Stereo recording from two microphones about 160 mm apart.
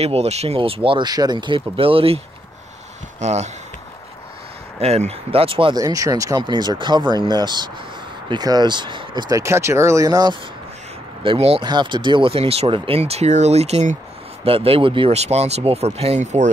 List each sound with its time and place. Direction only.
0.0 s speech: 40° right (ahead or behind)
4.7 s speech: 40° right (ahead or behind)
5.8 s speech: 20° right (ahead or behind)
11.2 s speech: 40° right (ahead or behind)